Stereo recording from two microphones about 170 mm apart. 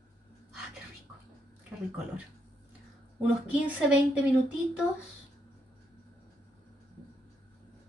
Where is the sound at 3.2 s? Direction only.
10° right (ahead or behind).